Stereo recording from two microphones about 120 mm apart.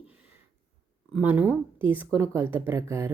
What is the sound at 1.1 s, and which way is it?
Speech, 15° right (ahead or behind).